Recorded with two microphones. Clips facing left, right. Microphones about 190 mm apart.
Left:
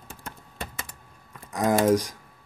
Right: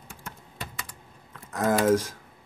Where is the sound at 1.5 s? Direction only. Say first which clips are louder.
Left 1 dB; 15° left (ahead or behind).